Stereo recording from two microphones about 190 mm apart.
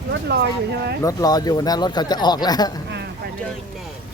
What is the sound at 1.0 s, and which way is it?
Speech, 20° left (ahead or behind).